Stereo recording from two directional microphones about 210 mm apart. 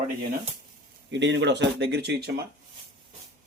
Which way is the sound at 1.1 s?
55° right (ahead or behind).